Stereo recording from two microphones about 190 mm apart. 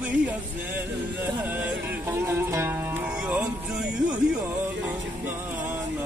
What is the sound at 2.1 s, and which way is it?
Speech, 15° right (ahead or behind).